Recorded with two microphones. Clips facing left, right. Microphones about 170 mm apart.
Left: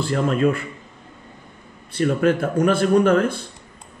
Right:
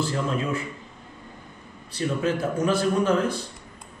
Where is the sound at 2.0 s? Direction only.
55° left (ahead or behind).